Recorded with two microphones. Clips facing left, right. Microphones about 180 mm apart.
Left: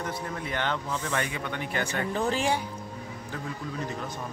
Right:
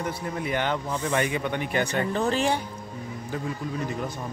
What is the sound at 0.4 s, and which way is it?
Speech, 10° right (ahead or behind).